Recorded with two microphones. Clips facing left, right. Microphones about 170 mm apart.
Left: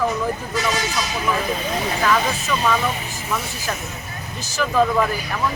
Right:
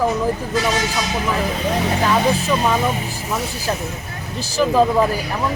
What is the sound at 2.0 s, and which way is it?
Speech, 30° right (ahead or behind).